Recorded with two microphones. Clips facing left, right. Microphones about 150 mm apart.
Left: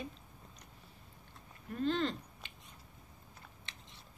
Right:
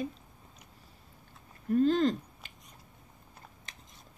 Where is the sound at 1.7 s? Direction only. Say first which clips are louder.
Right 9 dB; 40° right (ahead or behind).